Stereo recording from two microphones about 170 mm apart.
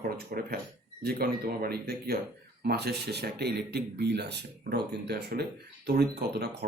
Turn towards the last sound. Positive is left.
turn(degrees=-70)  # may be behind; listen again after turning